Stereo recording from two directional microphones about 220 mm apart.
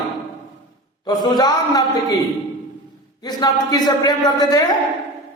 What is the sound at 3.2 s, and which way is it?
Speech, 20° left (ahead or behind).